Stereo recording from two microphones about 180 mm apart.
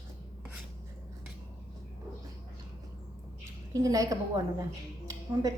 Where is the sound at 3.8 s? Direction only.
20° right (ahead or behind).